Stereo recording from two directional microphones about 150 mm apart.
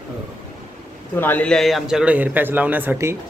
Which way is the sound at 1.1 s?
15° left (ahead or behind).